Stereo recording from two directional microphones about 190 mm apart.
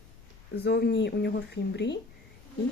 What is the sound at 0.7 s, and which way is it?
Speech, 60° left (ahead or behind).